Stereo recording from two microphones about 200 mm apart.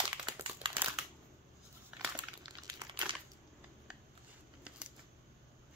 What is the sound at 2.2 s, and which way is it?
Crumpling, 20° right (ahead or behind).